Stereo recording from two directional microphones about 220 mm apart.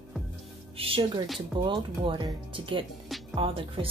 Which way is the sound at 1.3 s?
20° right (ahead or behind).